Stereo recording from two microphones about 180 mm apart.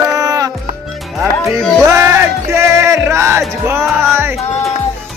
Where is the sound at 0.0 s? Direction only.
20° right (ahead or behind).